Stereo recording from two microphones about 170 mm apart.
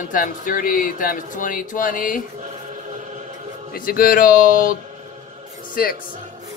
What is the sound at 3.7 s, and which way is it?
Speech, 55° left (ahead or behind).